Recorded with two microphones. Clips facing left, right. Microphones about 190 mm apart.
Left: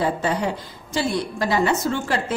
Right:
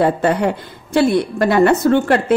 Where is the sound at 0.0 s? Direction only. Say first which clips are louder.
Right 7 dB; 60° right (ahead or behind).